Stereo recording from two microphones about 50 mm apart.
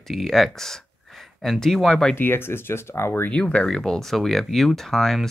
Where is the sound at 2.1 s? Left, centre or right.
Left.